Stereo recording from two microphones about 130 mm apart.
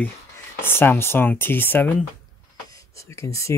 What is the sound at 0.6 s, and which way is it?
Speech, 15° left (ahead or behind).